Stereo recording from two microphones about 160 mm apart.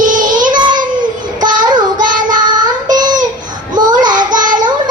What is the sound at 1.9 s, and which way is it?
Child singing, 55° right (ahead or behind).